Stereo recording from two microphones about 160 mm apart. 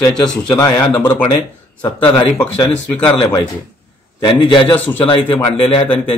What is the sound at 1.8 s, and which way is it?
A man's voice, 25° left (ahead or behind).